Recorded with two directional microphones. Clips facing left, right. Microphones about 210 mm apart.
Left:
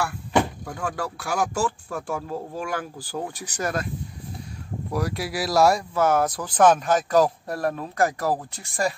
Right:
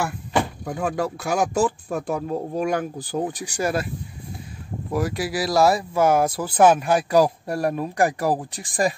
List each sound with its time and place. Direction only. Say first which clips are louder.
0.7 s speech: right 5 dB; 20° right (ahead or behind)
4.9 s speech: right 3 dB; centre (ahead or behind)